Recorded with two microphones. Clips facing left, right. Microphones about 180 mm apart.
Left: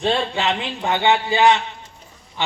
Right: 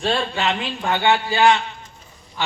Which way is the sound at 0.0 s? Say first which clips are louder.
Left 1 dB; 20° left (ahead or behind).